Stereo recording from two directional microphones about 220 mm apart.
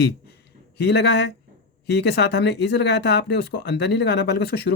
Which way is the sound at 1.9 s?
50° left (ahead or behind).